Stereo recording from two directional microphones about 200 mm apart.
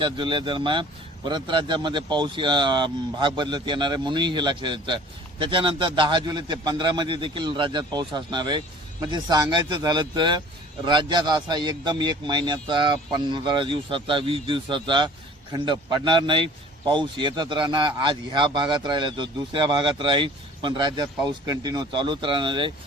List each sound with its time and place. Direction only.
0.0 s a man's voice: 25° right (ahead or behind)